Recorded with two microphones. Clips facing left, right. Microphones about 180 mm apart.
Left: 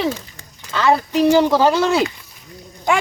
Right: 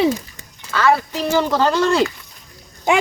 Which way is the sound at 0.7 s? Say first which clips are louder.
Left 1 dB; 20° left (ahead or behind).